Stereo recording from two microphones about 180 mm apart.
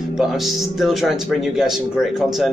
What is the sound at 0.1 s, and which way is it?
A man's voice, centre (ahead or behind).